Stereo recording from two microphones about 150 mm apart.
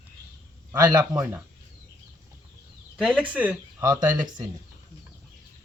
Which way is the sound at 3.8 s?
25° right (ahead or behind).